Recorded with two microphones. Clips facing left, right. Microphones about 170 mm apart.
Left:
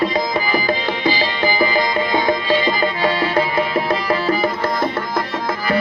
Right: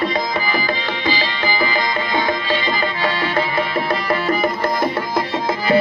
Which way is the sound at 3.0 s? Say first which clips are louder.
Left 2 dB; 10° left (ahead or behind).